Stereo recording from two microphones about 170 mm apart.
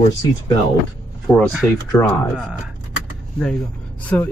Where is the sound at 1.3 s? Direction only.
20° left (ahead or behind).